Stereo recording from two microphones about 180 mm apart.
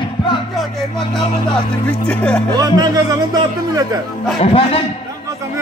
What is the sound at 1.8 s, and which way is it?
Speech, 5° left (ahead or behind).